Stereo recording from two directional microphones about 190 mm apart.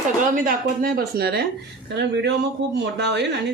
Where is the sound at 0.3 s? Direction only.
45° right (ahead or behind).